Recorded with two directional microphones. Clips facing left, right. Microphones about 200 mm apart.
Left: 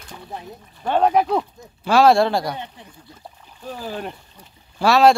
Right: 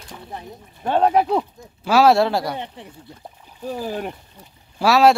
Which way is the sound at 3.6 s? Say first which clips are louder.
Right 3 dB; 10° right (ahead or behind).